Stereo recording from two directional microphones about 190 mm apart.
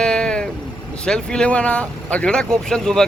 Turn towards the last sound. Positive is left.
turn(degrees=5)  # may be behind; listen again after turning